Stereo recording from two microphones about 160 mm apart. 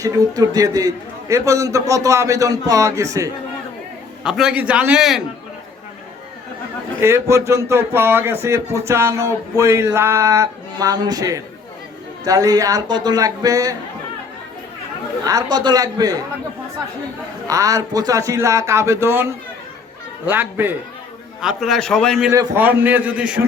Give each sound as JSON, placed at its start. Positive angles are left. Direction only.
{"t": 0.0, "sound": "a man's voice", "side_deg": -20}
{"t": 4.2, "sound": "a man's voice", "side_deg": -5}
{"t": 7.0, "sound": "a man's voice", "side_deg": -15}
{"t": 15.3, "sound": "a man's voice", "side_deg": -25}
{"t": 17.5, "sound": "a man's voice", "side_deg": -20}
{"t": 21.4, "sound": "a man's voice", "side_deg": 0}
{"t": 22.3, "sound": "speech", "side_deg": -15}